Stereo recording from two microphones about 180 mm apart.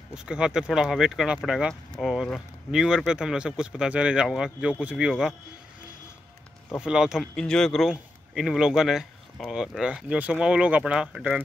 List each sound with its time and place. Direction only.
0.1 s a man's voice: 5° right (ahead or behind)
6.7 s a man's voice: 5° right (ahead or behind)